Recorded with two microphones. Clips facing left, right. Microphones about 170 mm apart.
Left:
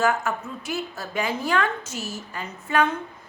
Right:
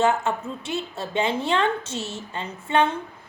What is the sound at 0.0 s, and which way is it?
A woman's voice, 25° right (ahead or behind).